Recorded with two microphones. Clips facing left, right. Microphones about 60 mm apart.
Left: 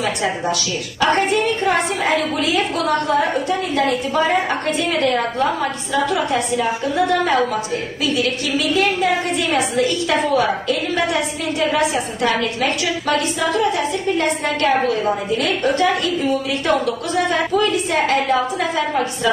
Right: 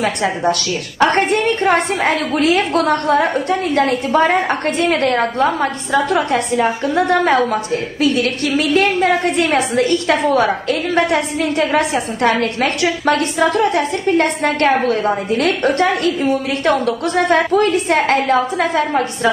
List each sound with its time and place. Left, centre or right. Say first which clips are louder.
0.0 s a woman's voice: right 4 dB; right